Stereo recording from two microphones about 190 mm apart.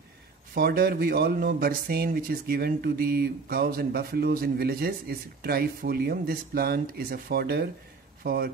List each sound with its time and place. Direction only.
0.6 s speech: 55° right (ahead or behind)